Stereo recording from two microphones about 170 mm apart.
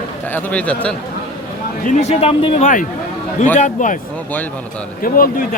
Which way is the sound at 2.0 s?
35° left (ahead or behind).